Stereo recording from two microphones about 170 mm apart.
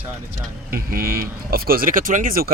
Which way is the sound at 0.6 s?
60° right (ahead or behind).